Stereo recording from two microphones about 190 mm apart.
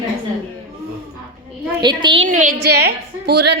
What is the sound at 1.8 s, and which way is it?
Speech, 25° right (ahead or behind).